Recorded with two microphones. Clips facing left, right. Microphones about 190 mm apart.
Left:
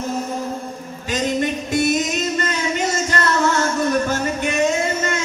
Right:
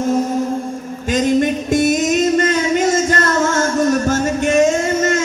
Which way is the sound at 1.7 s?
50° right (ahead or behind).